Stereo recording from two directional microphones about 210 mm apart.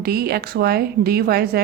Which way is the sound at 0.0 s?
45° right (ahead or behind).